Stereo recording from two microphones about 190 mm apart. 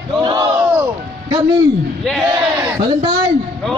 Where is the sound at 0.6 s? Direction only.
5° right (ahead or behind).